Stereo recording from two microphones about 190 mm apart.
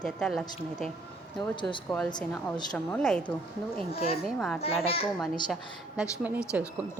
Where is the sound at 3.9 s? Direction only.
30° left (ahead or behind).